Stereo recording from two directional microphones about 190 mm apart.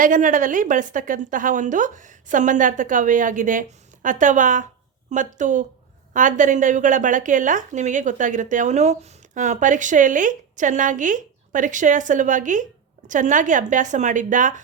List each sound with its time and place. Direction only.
0.0 s a woman's voice: 45° right (ahead or behind)